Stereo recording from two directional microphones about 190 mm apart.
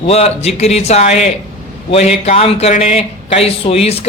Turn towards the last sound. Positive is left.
turn(degrees=30)  # may be behind; listen again after turning